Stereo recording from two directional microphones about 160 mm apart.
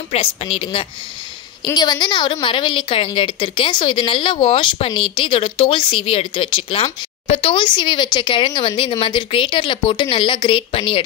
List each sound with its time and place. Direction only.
0.1 s a woman's voice: 40° left (ahead or behind)